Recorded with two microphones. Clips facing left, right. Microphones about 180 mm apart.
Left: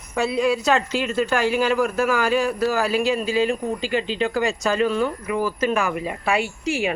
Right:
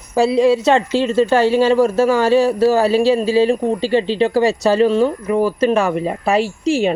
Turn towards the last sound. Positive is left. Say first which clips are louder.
# right 7 dB
turn(degrees=-30)  # may be behind; listen again after turning